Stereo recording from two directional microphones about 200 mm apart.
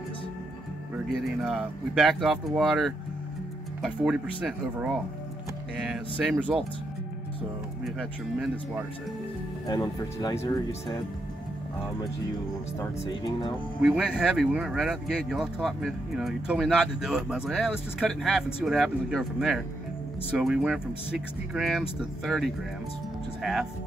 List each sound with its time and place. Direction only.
1.0 s speech: centre (ahead or behind)
7.8 s speech: centre (ahead or behind)
9.7 s speech: 20° left (ahead or behind)
13.1 s speech: 20° left (ahead or behind)
13.7 s speech: centre (ahead or behind)